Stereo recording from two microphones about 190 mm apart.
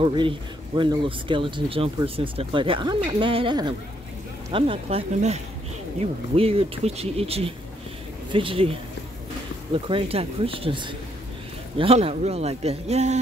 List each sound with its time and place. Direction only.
0.0 s speech: 25° right (ahead or behind)